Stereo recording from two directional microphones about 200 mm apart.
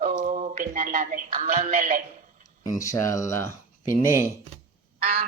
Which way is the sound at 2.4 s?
15° left (ahead or behind).